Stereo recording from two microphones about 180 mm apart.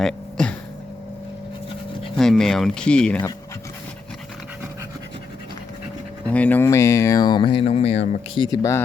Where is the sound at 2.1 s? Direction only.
5° left (ahead or behind).